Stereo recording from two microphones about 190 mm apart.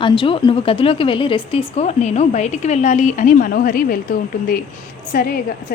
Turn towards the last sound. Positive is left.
turn(degrees=50)  # may be behind; listen again after turning